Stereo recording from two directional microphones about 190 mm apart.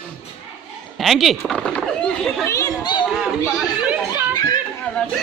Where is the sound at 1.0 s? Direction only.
Centre (ahead or behind).